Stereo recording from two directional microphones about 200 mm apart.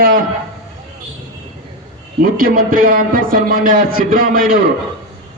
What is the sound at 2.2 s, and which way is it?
A man's voice, 45° right (ahead or behind).